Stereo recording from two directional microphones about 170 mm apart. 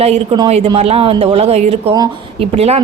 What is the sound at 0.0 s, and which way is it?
A woman's voice, 35° right (ahead or behind).